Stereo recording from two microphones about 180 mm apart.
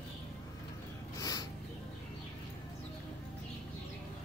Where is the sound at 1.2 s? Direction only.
20° left (ahead or behind).